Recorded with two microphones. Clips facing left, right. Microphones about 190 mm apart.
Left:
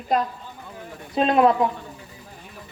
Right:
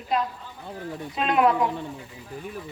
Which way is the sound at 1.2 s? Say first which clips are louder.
Left 4 dB; 35° left (ahead or behind).